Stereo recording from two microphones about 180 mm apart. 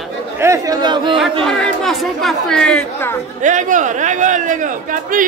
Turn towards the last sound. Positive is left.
turn(degrees=-50)  # may be behind; listen again after turning